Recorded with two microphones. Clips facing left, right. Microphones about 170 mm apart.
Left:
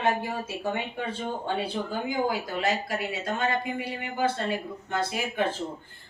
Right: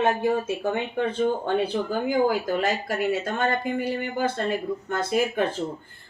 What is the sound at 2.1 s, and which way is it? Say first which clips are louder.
Speech: right 7 dB; 50° right (ahead or behind).